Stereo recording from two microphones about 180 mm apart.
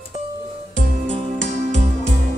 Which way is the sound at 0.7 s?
45° right (ahead or behind).